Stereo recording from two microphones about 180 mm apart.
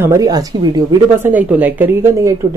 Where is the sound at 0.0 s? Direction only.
15° right (ahead or behind).